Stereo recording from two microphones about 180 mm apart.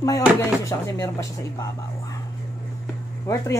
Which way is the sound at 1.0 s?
15° left (ahead or behind).